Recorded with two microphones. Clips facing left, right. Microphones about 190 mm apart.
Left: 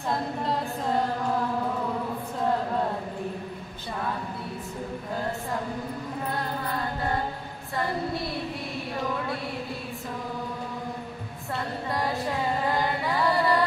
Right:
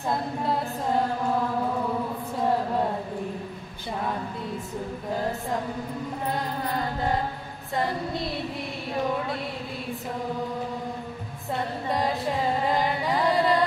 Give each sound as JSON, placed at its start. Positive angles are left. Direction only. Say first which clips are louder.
{"t": 11.9, "sound": "music", "louder": "right 3 dB", "side_deg": -20}
{"t": 13.1, "sound": "carnatic music", "louder": "right 2 dB", "side_deg": -20}